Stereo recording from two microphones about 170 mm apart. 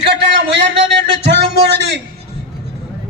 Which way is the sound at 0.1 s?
90° right.